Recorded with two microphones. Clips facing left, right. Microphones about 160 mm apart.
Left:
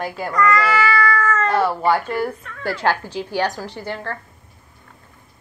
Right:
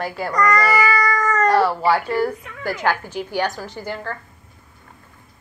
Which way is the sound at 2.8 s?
35° left (ahead or behind).